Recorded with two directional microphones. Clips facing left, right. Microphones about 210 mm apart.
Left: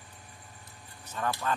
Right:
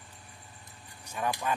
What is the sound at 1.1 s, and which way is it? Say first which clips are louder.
Speech: even; 15° right (ahead or behind).